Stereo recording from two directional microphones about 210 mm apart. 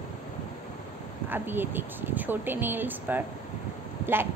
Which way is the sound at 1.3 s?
10° right (ahead or behind).